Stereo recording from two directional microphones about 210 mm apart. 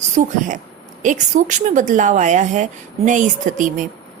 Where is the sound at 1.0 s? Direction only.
35° right (ahead or behind).